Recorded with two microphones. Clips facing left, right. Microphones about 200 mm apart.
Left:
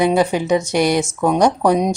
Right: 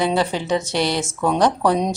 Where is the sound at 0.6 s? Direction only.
50° left (ahead or behind).